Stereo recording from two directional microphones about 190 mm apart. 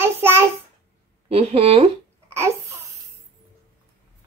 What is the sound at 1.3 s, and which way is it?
Speech, 30° right (ahead or behind).